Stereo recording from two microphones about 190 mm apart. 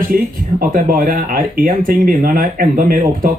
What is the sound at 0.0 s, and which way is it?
Speech, 45° right (ahead or behind).